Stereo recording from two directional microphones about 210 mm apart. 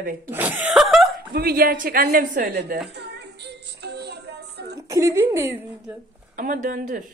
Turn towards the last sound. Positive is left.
turn(degrees=-40)  # may be behind; listen again after turning